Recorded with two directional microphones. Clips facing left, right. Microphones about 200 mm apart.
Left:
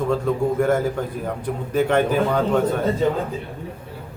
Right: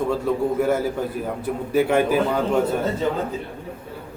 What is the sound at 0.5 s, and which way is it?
Speech, 5° right (ahead or behind).